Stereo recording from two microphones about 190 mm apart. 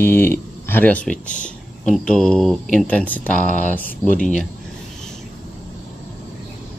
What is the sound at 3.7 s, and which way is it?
Speech, 45° left (ahead or behind).